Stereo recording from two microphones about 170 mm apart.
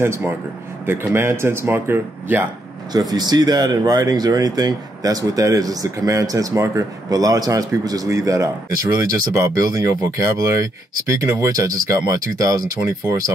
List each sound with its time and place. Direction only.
0.0 s speech: 15° right (ahead or behind)
2.9 s speech: 25° right (ahead or behind)